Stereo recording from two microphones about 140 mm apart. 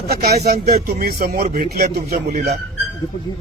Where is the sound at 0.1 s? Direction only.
90° right.